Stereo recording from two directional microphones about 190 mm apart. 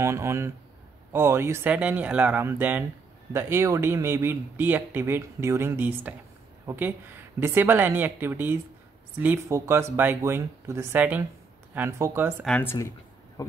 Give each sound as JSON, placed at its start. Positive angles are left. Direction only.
{"t": 0.0, "sound": "speech", "side_deg": -15}
{"t": 12.4, "sound": "speech", "side_deg": 10}